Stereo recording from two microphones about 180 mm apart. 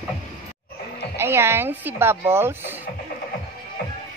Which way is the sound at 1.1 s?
15° right (ahead or behind).